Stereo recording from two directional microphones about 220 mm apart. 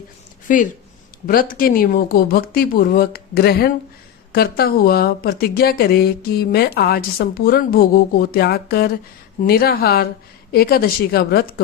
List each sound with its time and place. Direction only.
0.4 s a woman's voice: 35° left (ahead or behind)